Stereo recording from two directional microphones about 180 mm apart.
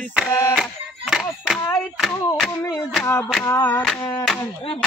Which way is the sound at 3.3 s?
10° left (ahead or behind).